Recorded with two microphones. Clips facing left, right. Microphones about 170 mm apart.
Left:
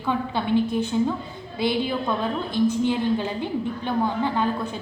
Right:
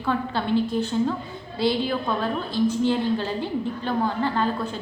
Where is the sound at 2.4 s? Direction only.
15° left (ahead or behind).